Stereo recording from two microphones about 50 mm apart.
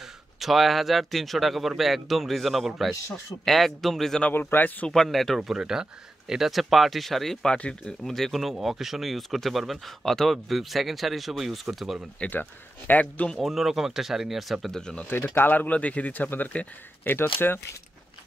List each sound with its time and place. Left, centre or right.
0.0 s speech: centre
4.3 s speech: left
4.8 s speech: centre
5.5 s speech: centre
7.4 s speech: centre
8.0 s speech: centre
12.3 s speech: left
13.0 s speech: left
13.4 s speech: centre
14.7 s speech: centre
15.0 s speech: left